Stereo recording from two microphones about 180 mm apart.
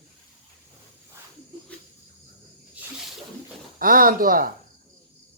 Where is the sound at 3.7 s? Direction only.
50° right (ahead or behind).